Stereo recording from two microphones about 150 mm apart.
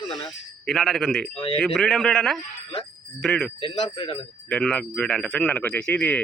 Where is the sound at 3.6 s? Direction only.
30° left (ahead or behind).